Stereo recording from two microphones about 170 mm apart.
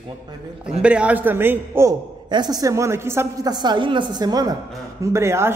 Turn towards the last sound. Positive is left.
turn(degrees=-15)  # may be behind; listen again after turning